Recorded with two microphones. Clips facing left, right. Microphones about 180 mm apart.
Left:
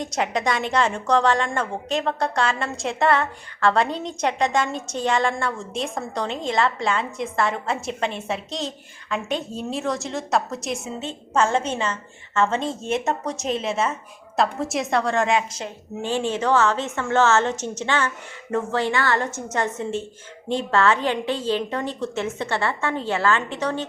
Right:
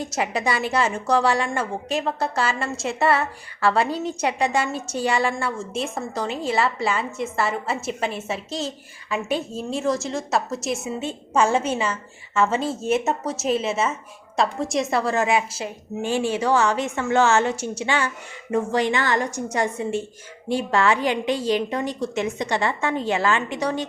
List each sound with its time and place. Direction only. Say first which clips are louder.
0.0 s a woman's voice: left 1 dB; 5° right (ahead or behind)